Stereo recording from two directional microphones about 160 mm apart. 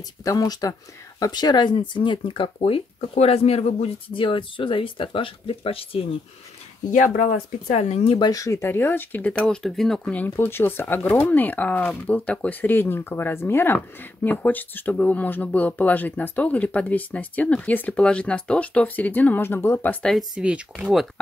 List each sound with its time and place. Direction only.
0.2 s speech: 20° left (ahead or behind)
6.9 s speech: 55° left (ahead or behind); by 8.3 s 35° left (ahead or behind)
8.3 s speech: 20° left (ahead or behind); by 21.1 s centre (ahead or behind)